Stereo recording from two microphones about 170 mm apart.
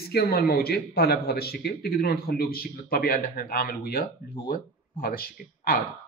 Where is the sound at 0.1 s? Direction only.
65° left (ahead or behind).